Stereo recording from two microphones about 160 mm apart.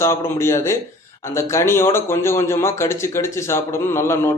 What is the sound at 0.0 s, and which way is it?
Speech, 15° left (ahead or behind).